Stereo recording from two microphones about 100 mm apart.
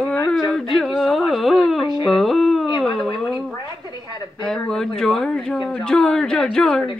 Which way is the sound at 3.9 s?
45° left (ahead or behind).